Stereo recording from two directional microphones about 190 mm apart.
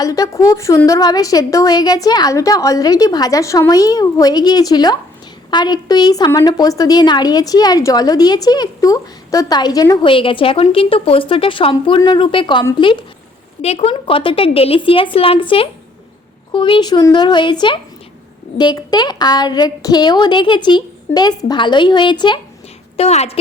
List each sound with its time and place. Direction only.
0.0 s a woman's voice: 20° left (ahead or behind)
23.0 s a woman's voice: 35° left (ahead or behind)